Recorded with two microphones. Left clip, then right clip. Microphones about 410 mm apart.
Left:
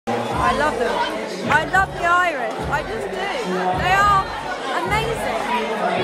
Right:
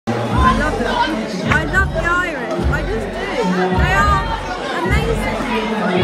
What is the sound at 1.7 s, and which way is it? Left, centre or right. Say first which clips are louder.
Speech: even; centre.